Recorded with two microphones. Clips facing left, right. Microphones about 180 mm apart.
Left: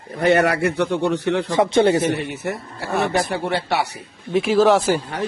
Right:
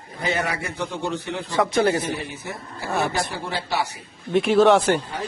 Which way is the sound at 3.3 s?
65° left (ahead or behind).